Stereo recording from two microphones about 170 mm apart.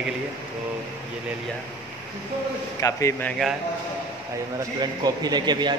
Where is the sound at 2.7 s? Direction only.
20° left (ahead or behind).